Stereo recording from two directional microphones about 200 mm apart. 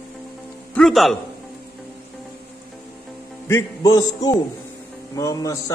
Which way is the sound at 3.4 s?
15° left (ahead or behind).